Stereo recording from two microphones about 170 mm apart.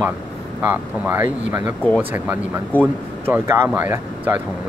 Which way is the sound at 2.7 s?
10° left (ahead or behind).